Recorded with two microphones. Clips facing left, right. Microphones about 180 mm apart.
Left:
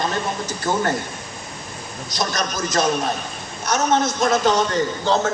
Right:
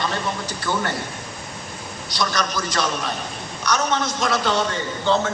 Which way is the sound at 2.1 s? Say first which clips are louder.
Right 1 dB; 45° left (ahead or behind).